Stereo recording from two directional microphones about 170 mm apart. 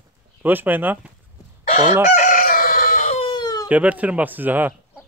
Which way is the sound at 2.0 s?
45° left (ahead or behind).